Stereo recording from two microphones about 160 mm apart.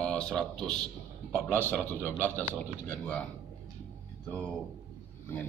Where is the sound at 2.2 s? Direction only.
10° left (ahead or behind).